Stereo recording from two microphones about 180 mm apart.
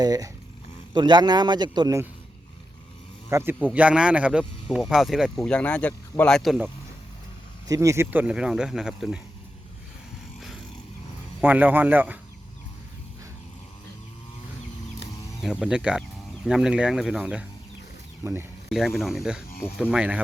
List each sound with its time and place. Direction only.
0.0 s a man's voice: 20° right (ahead or behind)
3.2 s a man's voice: 15° right (ahead or behind)
7.7 s speech: 15° right (ahead or behind); by 9.2 s centre (ahead or behind)
11.3 s speech: 10° right (ahead or behind)
15.4 s speech: 5° right (ahead or behind)
18.7 s speech: centre (ahead or behind)